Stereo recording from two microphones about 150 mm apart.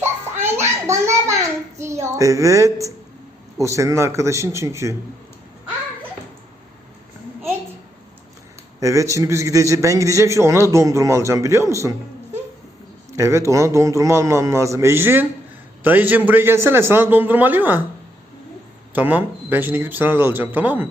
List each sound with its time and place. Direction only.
0.0 s a child's voice: 15° right (ahead or behind)
8.8 s a man's voice: 20° right (ahead or behind)
18.9 s a man's voice: 10° right (ahead or behind)